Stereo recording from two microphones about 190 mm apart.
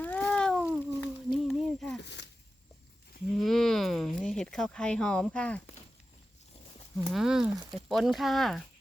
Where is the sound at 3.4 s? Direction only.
Centre (ahead or behind).